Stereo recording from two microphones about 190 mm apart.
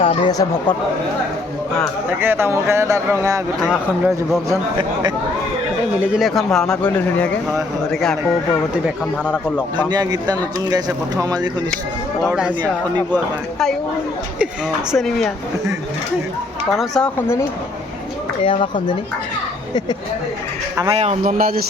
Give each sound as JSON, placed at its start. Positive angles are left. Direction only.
{"t": 0.0, "sound": "speech", "side_deg": 25}
{"t": 2.0, "sound": "speech", "side_deg": -10}
{"t": 3.6, "sound": "a man's voice", "side_deg": 0}
{"t": 4.4, "sound": "speech", "side_deg": -25}
{"t": 6.1, "sound": "a man's voice", "side_deg": 0}
{"t": 9.9, "sound": "speech", "side_deg": -20}
{"t": 12.2, "sound": "a man's voice", "side_deg": -5}
{"t": 14.9, "sound": "a man's voice", "side_deg": 0}
{"t": 16.7, "sound": "a man's voice", "side_deg": 0}
{"t": 18.4, "sound": "speech", "side_deg": 25}
{"t": 20.8, "sound": "speech", "side_deg": -35}